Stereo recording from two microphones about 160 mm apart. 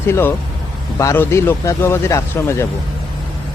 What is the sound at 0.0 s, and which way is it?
Speech, 15° left (ahead or behind).